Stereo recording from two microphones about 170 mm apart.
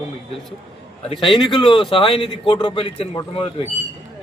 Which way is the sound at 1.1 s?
30° left (ahead or behind).